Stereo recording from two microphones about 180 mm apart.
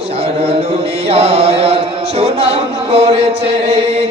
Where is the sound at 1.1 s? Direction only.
30° right (ahead or behind).